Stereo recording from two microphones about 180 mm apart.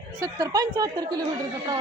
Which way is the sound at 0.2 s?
20° right (ahead or behind).